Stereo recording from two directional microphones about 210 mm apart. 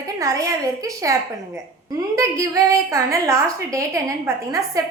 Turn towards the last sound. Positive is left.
turn(degrees=-15)  # may be behind; listen again after turning